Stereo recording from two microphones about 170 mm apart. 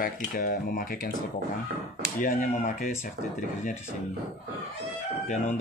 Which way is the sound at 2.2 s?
50° left (ahead or behind).